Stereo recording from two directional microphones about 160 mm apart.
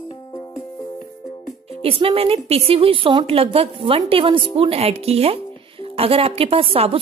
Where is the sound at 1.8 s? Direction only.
35° right (ahead or behind).